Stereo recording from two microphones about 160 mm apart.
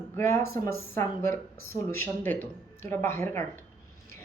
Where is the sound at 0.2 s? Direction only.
15° left (ahead or behind).